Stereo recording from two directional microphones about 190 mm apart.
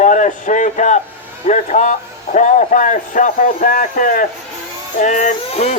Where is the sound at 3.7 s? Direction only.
45° left (ahead or behind).